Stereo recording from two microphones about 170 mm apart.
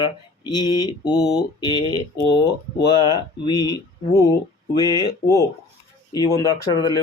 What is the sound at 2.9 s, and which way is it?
Speech, 25° left (ahead or behind).